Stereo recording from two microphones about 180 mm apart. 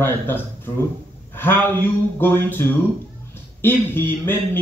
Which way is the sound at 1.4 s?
10° left (ahead or behind).